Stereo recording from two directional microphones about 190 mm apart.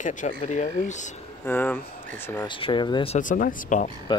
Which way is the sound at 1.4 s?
10° left (ahead or behind).